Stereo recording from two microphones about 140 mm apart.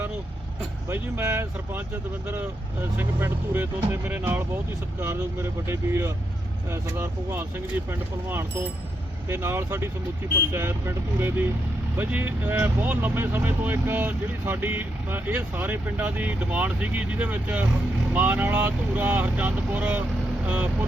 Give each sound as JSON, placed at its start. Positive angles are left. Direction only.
{"t": 0.9, "sound": "speech", "side_deg": -15}